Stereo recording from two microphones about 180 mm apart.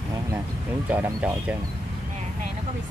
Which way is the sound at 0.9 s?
10° right (ahead or behind).